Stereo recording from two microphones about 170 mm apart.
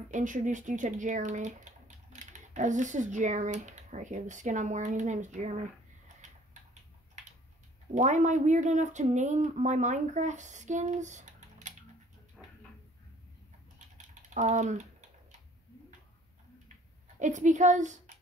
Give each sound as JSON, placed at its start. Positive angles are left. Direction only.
{"t": 0.1, "sound": "speech", "side_deg": -45}
{"t": 7.9, "sound": "speech", "side_deg": -45}
{"t": 12.4, "sound": "a sound", "side_deg": 5}
{"t": 14.0, "sound": "typing", "side_deg": -45}
{"t": 17.2, "sound": "speech", "side_deg": -45}